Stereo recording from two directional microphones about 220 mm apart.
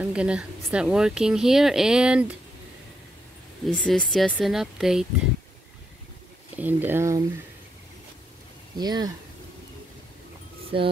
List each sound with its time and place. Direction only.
0.0 s speech: 5° right (ahead or behind)
3.6 s speech: 5° left (ahead or behind)
6.5 s speech: 10° right (ahead or behind)
8.7 s speech: 20° right (ahead or behind)